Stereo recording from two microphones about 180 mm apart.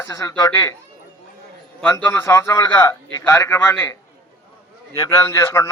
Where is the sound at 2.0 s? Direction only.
10° left (ahead or behind).